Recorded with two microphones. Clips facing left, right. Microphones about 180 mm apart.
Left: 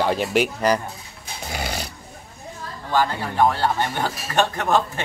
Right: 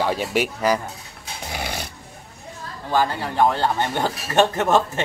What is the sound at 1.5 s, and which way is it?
Dog, centre (ahead or behind).